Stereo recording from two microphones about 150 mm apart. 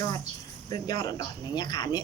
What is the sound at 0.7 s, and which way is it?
Speech, 25° left (ahead or behind).